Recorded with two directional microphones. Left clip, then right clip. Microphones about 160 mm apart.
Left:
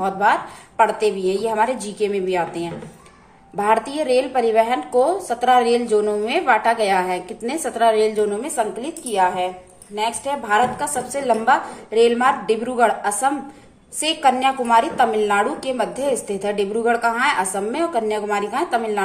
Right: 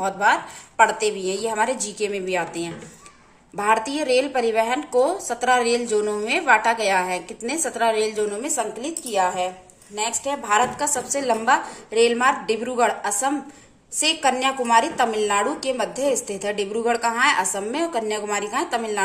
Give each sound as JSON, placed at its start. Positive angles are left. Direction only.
{"t": 0.0, "sound": "a woman's voice", "side_deg": -15}